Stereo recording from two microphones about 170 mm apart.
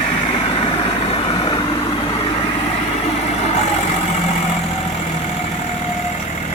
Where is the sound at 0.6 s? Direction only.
30° left (ahead or behind).